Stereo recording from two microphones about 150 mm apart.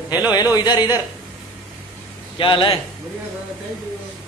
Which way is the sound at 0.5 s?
25° left (ahead or behind).